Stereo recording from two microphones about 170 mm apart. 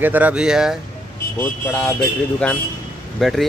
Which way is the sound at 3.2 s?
Centre (ahead or behind).